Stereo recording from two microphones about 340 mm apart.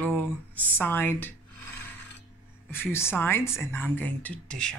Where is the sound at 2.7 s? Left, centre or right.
Centre.